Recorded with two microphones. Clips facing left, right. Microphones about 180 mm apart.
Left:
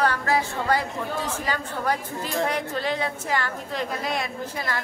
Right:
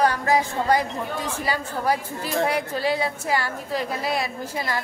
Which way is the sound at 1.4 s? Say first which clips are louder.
Right 4 dB; 10° right (ahead or behind).